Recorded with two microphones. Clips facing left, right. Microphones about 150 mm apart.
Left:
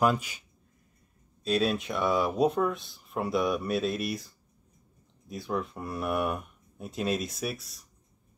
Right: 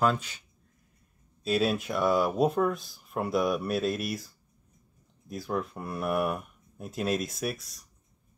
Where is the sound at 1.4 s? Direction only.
5° right (ahead or behind).